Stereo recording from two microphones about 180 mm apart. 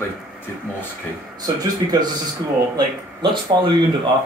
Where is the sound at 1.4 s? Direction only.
20° right (ahead or behind).